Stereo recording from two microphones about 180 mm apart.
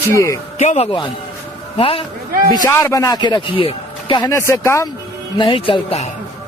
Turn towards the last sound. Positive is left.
turn(degrees=35)  # may be behind; listen again after turning